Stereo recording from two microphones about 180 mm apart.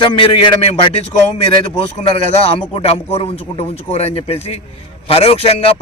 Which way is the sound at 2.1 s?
35° left (ahead or behind).